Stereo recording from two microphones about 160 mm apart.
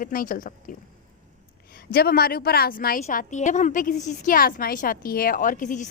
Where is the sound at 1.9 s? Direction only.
75° left (ahead or behind).